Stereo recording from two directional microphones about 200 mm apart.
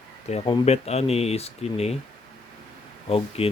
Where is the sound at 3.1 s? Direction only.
30° left (ahead or behind).